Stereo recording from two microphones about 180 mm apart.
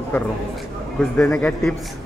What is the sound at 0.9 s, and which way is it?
Speech, 5° left (ahead or behind).